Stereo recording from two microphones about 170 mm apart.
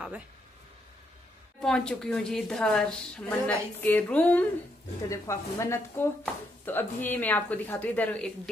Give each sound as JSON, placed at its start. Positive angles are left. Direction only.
{"t": 1.6, "sound": "a woman's voice", "side_deg": 5}